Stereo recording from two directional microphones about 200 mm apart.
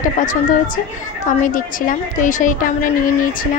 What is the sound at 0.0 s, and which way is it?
Speech, 40° left (ahead or behind).